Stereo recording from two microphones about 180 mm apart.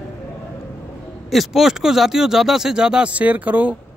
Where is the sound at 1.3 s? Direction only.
Centre (ahead or behind).